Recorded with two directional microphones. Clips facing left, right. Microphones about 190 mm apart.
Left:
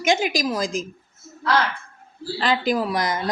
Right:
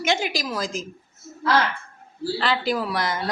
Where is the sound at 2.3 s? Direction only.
15° left (ahead or behind).